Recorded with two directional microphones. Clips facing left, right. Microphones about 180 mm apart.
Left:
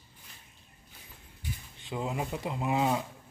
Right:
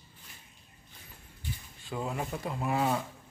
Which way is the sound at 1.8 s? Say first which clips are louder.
Left 1 dB; 15° left (ahead or behind).